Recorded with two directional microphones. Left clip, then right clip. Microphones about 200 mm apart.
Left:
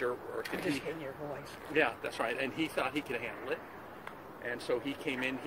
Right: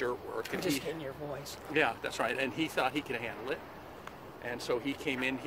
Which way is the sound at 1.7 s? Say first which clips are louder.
Right 1 dB; 35° right (ahead or behind).